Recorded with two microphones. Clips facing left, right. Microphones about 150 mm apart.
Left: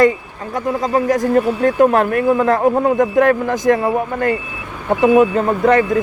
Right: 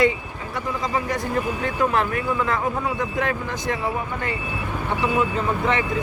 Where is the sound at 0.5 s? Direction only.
45° left (ahead or behind).